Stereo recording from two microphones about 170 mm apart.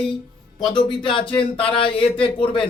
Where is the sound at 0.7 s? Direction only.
25° left (ahead or behind).